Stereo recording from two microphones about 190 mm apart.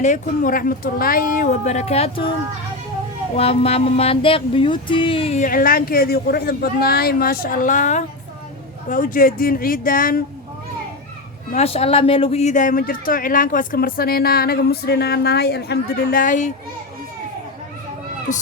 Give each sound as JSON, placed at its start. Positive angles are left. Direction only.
{"t": 0.0, "sound": "speech", "side_deg": 40}
{"t": 3.3, "sound": "a sound", "side_deg": 30}
{"t": 5.5, "sound": "speech", "side_deg": 50}
{"t": 11.5, "sound": "speech", "side_deg": 30}
{"t": 18.3, "sound": "speech", "side_deg": 40}